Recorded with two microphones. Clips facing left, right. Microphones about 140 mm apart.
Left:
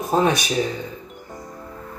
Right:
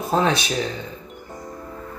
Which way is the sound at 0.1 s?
15° left (ahead or behind).